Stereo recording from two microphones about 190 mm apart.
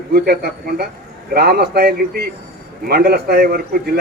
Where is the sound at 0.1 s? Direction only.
55° right (ahead or behind).